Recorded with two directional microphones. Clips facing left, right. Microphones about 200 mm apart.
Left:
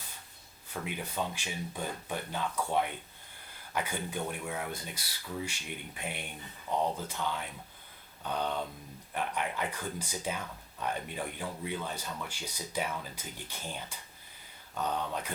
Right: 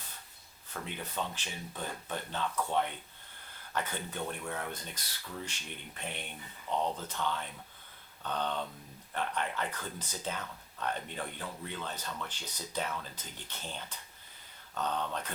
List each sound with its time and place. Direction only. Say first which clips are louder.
0.7 s speech: left 3 dB; 10° left (ahead or behind)